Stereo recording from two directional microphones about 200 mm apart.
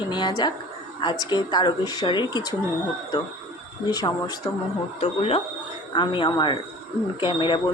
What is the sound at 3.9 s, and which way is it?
Speech, 20° left (ahead or behind).